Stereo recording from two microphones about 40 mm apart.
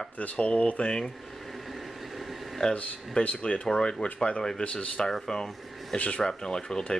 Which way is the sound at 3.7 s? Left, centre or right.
Left.